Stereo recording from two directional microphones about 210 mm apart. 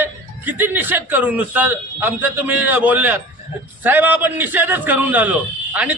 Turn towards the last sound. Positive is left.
turn(degrees=-5)  # may be behind; listen again after turning